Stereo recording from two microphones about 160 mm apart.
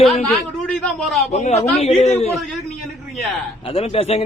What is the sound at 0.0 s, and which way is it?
A man's voice, centre (ahead or behind).